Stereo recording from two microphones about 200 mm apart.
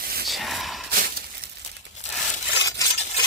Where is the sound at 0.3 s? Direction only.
Centre (ahead or behind).